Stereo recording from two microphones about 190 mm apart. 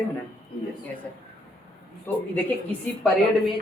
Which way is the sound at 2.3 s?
5° left (ahead or behind).